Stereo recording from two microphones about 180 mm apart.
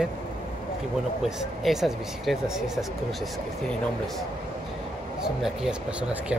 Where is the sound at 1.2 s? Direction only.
Centre (ahead or behind).